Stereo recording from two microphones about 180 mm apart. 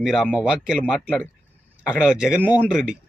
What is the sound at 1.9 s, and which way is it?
Speech, 5° right (ahead or behind).